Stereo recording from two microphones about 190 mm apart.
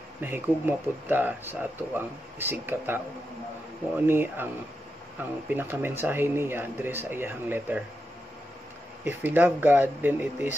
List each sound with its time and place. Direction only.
0.2 s speech: 10° right (ahead or behind)
5.5 s speech: 10° right (ahead or behind)
9.0 s speech: 10° right (ahead or behind)